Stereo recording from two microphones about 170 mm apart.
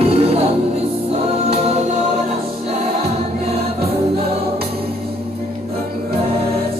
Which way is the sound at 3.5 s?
35° right (ahead or behind).